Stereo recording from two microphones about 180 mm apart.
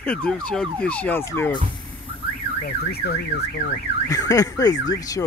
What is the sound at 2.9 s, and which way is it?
Car alarm, 60° left (ahead or behind).